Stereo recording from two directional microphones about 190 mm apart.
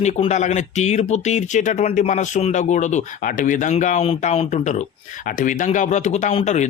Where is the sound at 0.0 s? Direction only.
35° left (ahead or behind).